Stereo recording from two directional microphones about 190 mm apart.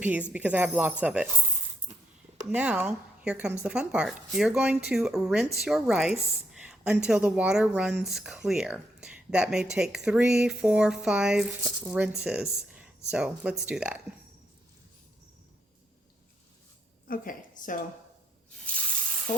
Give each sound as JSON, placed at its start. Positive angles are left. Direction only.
{"t": 0.0, "sound": "speech", "side_deg": -5}
{"t": 2.5, "sound": "speech", "side_deg": -5}
{"t": 17.1, "sound": "a woman's voice", "side_deg": 45}
{"t": 18.6, "sound": "water", "side_deg": 5}